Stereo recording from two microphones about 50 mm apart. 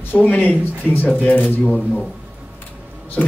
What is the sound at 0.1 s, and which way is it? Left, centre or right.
Speech, left.